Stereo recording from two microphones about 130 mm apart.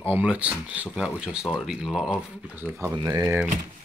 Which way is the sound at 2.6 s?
20° right (ahead or behind).